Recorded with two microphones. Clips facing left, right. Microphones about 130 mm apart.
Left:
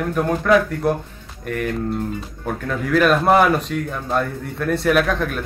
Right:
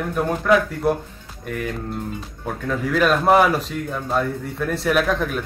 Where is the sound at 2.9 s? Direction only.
Centre (ahead or behind).